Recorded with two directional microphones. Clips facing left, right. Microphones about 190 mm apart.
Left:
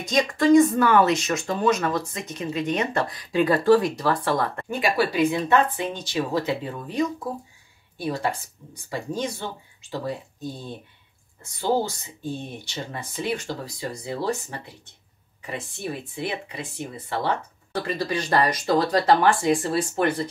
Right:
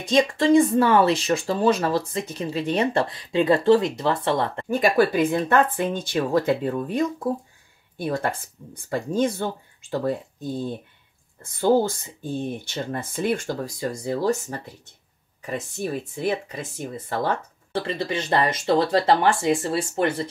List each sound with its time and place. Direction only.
0.0 s speech: 30° right (ahead or behind)
4.6 s speech: 40° right (ahead or behind)
11.4 s speech: 50° right (ahead or behind)
17.7 s speech: 25° right (ahead or behind)